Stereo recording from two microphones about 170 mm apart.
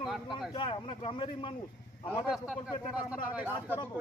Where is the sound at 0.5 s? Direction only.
30° left (ahead or behind).